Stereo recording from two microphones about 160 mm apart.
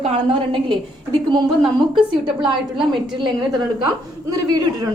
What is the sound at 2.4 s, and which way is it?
Speech, 30° right (ahead or behind).